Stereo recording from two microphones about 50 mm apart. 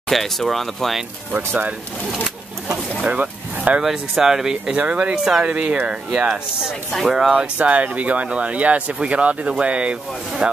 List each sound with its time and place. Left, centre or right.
0.1 s speech: centre
1.3 s speech: right
2.1 s speech: centre
3.0 s speech: right
4.2 s speech: centre
4.7 s speech: right; by 7.4 s centre
7.5 s speech: right
10.4 s rub: centre